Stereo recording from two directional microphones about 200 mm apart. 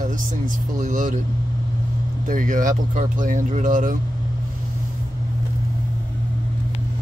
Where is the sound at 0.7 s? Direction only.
40° right (ahead or behind).